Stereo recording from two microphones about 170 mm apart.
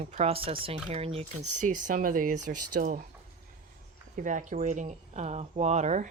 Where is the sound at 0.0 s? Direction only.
40° right (ahead or behind).